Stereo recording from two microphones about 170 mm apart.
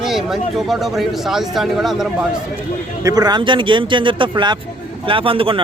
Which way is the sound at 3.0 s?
20° right (ahead or behind).